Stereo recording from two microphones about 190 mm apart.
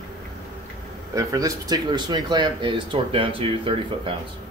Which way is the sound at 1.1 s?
20° right (ahead or behind).